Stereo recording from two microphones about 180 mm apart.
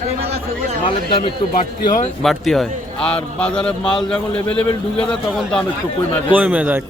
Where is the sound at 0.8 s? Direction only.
30° left (ahead or behind).